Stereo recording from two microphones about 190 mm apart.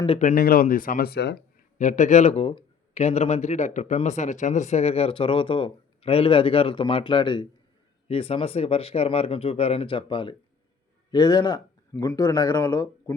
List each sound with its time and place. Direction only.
0.0 s speech: 35° left (ahead or behind); by 1.5 s 60° left (ahead or behind)
1.8 s speech: 40° left (ahead or behind); by 13.1 s 10° left (ahead or behind)